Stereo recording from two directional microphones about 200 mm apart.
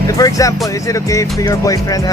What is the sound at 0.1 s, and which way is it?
Speech, 15° left (ahead or behind).